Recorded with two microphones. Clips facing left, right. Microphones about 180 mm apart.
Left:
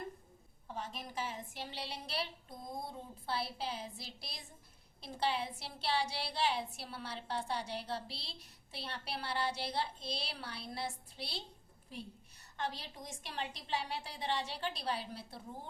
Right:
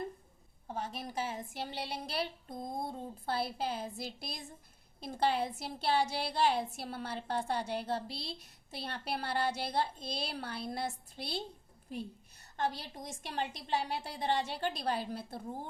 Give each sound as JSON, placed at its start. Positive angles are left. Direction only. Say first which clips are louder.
{"t": 0.7, "sound": "a woman's voice", "louder": "right 4 dB", "side_deg": -45}